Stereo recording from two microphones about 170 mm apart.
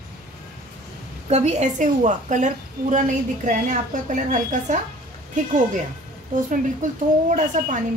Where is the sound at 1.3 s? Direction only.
40° right (ahead or behind).